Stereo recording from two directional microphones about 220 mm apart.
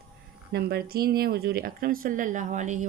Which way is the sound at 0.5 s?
45° right (ahead or behind).